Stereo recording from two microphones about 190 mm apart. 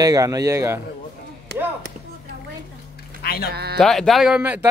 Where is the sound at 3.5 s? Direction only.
55° right (ahead or behind).